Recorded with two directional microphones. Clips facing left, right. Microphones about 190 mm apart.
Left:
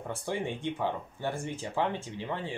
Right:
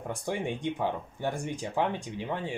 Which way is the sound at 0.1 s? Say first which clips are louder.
Right 1 dB; 15° right (ahead or behind).